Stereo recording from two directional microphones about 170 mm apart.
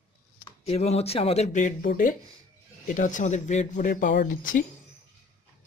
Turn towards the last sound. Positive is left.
turn(degrees=50)  # may be behind; listen again after turning